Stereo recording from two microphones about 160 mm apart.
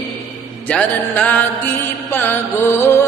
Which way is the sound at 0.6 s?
10° left (ahead or behind).